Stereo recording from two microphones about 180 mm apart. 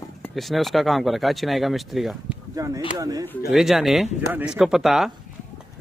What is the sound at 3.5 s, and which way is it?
Speech, centre (ahead or behind).